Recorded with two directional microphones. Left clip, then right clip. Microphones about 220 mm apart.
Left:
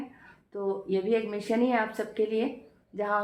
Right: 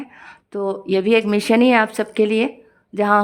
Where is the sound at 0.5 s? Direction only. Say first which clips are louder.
Right 9 dB; 45° right (ahead or behind).